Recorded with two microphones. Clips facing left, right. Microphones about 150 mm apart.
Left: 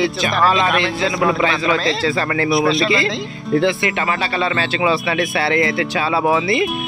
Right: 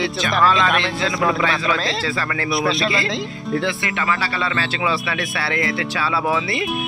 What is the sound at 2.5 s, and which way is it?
Speech, centre (ahead or behind).